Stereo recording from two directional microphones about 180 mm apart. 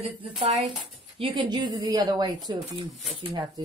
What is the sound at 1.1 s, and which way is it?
Speech, 30° right (ahead or behind).